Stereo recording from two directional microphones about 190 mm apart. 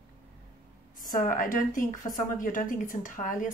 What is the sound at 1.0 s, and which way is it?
A woman's voice, 45° left (ahead or behind).